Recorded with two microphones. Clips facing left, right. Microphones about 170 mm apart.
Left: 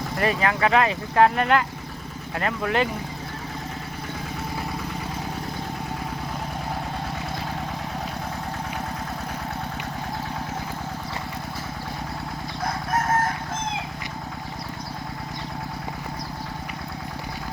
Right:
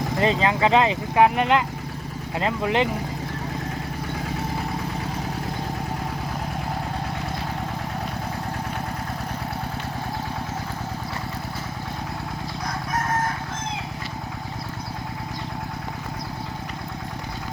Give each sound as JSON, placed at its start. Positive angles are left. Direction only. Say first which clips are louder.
{"t": 0.2, "sound": "speech", "louder": "right 1 dB", "side_deg": -20}